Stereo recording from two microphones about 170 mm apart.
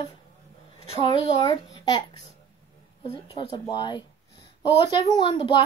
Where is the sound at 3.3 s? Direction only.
30° left (ahead or behind).